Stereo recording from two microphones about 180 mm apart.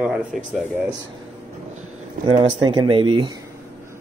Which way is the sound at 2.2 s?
30° right (ahead or behind).